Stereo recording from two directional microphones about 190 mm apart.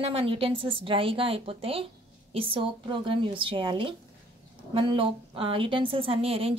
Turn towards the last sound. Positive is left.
turn(degrees=-30)  # may be behind; listen again after turning